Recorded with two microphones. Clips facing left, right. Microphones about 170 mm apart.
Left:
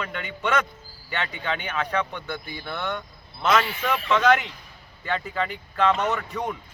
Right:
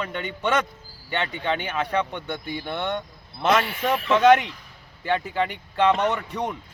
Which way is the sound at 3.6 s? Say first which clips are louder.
Right 2 dB; 55° right (ahead or behind).